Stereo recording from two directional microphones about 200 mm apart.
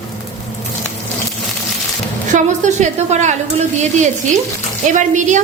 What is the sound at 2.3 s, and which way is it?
A woman's voice, 35° right (ahead or behind).